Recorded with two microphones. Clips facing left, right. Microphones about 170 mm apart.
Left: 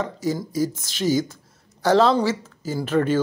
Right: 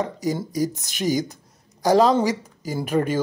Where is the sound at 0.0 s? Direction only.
15° right (ahead or behind).